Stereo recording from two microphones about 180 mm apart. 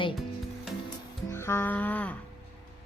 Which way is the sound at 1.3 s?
15° left (ahead or behind).